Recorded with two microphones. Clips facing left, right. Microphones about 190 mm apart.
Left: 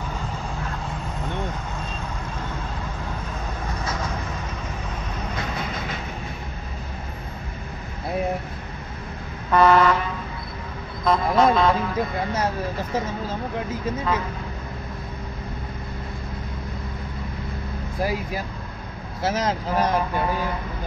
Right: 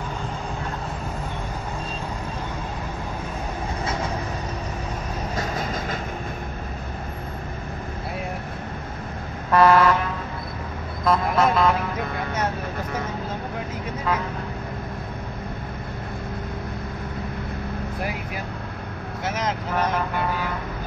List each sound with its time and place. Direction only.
5.3 s vehicle: 40° right (ahead or behind)
9.5 s vehicle: 5° right (ahead or behind)
11.1 s vehicle: 5° right (ahead or behind)
19.2 s vehicle: 35° left (ahead or behind)